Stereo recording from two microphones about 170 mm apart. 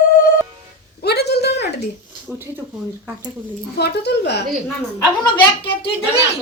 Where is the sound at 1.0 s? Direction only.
75° left (ahead or behind).